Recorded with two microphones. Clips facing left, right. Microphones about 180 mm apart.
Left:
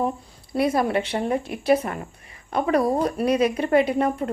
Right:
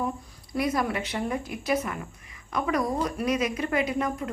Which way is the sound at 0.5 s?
30° left (ahead or behind).